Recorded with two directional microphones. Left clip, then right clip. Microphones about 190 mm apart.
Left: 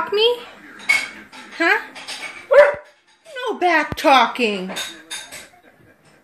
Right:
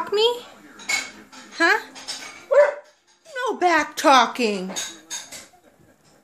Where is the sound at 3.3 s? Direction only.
15° right (ahead or behind).